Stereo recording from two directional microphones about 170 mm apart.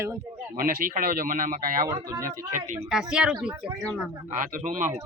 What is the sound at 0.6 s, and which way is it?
A woman's voice, 60° right (ahead or behind).